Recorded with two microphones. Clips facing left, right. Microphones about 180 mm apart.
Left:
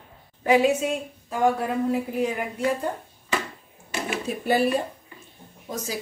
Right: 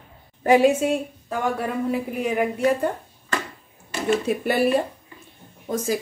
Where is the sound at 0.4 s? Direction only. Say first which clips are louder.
Right 3 dB; 50° right (ahead or behind).